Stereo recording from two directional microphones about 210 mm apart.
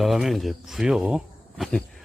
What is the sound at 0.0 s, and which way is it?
Speech, centre (ahead or behind).